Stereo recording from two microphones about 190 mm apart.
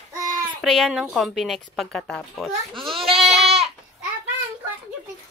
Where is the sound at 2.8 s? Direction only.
30° right (ahead or behind).